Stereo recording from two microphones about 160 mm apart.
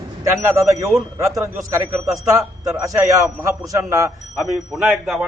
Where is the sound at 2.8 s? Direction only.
20° right (ahead or behind).